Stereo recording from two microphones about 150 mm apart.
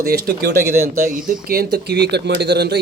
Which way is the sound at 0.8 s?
65° right (ahead or behind).